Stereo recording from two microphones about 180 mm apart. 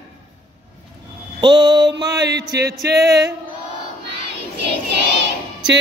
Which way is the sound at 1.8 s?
70° right (ahead or behind).